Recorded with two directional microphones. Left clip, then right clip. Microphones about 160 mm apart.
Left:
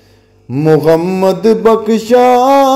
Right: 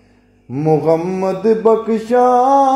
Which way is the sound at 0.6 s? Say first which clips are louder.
Left 5 dB; 35° left (ahead or behind).